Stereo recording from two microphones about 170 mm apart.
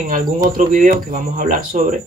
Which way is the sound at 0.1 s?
55° right (ahead or behind).